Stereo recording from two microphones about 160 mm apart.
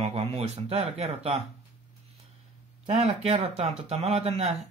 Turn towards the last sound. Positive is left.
turn(degrees=-40)  # may be behind; listen again after turning